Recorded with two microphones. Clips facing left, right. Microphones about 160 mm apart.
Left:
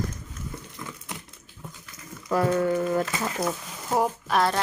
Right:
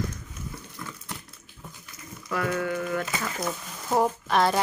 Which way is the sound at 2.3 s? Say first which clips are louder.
Left 5 dB; 35° left (ahead or behind).